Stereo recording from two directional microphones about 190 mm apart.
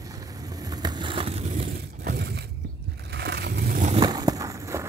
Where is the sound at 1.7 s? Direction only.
50° right (ahead or behind).